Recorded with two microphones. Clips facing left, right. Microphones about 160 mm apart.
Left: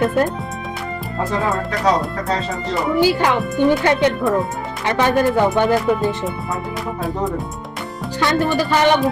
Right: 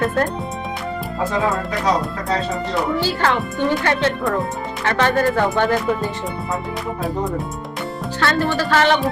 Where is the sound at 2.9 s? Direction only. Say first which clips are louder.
Left 4 dB; 15° left (ahead or behind).